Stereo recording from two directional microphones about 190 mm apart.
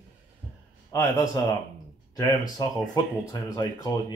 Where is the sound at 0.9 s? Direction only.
15° left (ahead or behind).